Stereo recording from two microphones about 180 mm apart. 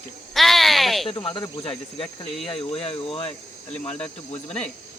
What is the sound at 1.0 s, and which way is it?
Cricket, 30° left (ahead or behind).